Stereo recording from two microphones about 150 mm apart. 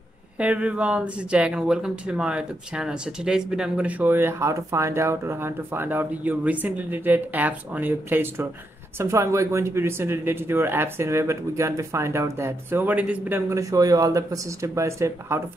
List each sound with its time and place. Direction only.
0.4 s speech: 10° right (ahead or behind)